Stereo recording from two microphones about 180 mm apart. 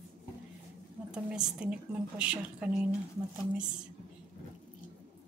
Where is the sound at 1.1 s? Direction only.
5° right (ahead or behind).